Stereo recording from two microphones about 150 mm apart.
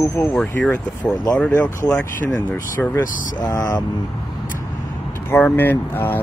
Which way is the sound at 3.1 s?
65° left (ahead or behind).